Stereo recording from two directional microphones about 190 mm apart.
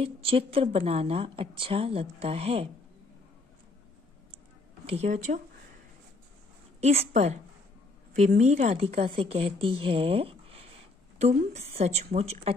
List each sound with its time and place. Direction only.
0.0 s a woman's voice: 30° right (ahead or behind)
4.8 s a woman's voice: 35° right (ahead or behind)
6.8 s a woman's voice: 35° right (ahead or behind)